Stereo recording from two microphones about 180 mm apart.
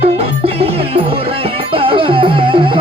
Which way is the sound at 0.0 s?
35° right (ahead or behind).